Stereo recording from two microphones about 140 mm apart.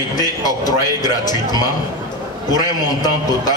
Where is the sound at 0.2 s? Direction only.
25° left (ahead or behind).